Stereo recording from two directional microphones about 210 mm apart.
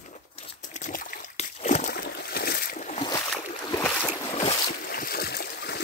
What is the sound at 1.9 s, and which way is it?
Boat, 50° left (ahead or behind).